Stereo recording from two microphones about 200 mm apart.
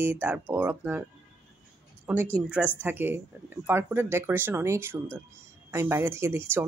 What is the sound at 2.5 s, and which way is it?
Speech, 5° right (ahead or behind).